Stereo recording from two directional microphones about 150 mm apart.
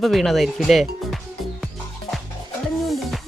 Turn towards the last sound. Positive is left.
turn(degrees=0)  # may be behind; listen again after turning